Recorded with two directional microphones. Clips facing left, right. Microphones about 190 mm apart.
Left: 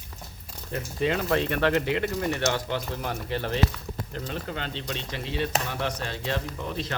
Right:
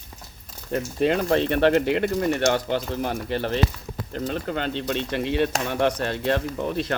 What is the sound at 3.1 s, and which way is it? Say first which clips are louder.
Speech: right 1 dB; 40° right (ahead or behind).